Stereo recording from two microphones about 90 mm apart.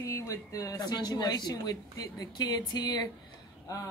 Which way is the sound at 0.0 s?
35° left (ahead or behind).